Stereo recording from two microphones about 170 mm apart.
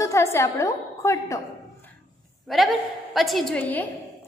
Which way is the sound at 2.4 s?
Centre (ahead or behind).